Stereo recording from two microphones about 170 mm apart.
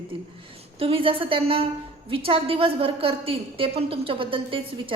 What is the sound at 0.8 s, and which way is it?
A woman's voice, 30° right (ahead or behind).